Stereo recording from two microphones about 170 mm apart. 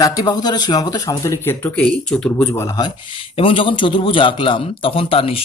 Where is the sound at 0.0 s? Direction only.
25° left (ahead or behind).